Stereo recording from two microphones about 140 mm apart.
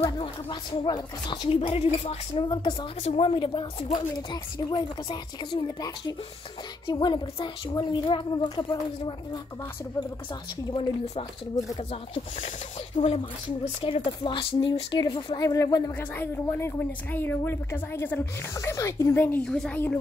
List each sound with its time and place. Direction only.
0.2 s speech: 30° left (ahead or behind)
2.4 s speech: 35° left (ahead or behind)
3.0 s speech: 45° left (ahead or behind)
10.7 s speech: 35° left (ahead or behind)
12.4 s speech: 60° left (ahead or behind)
13.7 s a woman's voice: 40° left (ahead or behind); by 19.8 s 5° left (ahead or behind)